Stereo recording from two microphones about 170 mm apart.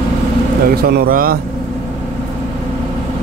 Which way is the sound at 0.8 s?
65° right (ahead or behind).